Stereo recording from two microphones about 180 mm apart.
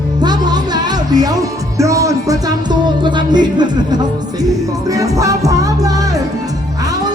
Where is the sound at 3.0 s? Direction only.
25° right (ahead or behind).